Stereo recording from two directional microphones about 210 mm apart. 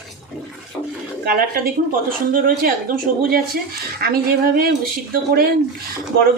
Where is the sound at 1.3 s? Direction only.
45° right (ahead or behind).